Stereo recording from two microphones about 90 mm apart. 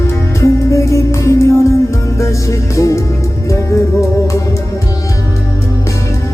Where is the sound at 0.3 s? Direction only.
35° left (ahead or behind).